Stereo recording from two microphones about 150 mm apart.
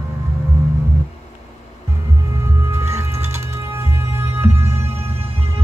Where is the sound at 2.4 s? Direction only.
15° right (ahead or behind).